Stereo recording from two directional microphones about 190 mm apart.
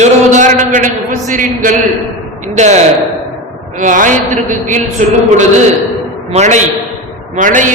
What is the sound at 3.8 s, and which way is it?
A man's voice, 40° right (ahead or behind).